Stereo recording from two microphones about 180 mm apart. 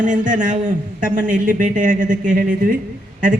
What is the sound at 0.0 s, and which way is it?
A man's voice, 45° right (ahead or behind).